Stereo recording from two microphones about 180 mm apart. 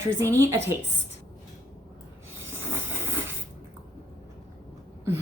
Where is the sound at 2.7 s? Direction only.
15° right (ahead or behind).